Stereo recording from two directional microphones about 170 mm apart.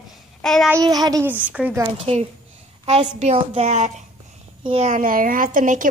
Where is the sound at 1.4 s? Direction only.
10° right (ahead or behind).